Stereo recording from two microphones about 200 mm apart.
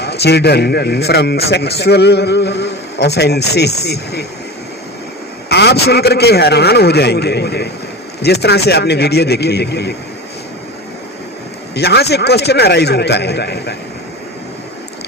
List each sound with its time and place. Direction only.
0.0 s a man's voice: 55° left (ahead or behind)
5.5 s a man's voice: 55° left (ahead or behind)
11.7 s a man's voice: 55° left (ahead or behind)